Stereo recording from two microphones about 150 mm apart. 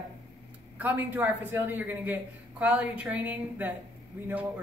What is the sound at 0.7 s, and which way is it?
A man's voice, 10° right (ahead or behind).